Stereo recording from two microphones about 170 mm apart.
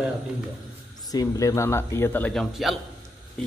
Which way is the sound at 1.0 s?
20° left (ahead or behind).